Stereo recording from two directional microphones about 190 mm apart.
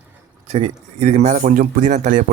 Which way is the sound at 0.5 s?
35° right (ahead or behind).